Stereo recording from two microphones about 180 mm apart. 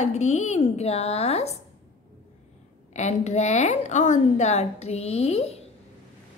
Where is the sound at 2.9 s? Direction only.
40° left (ahead or behind).